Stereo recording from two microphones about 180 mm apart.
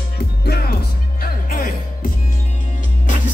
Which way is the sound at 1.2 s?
50° left (ahead or behind).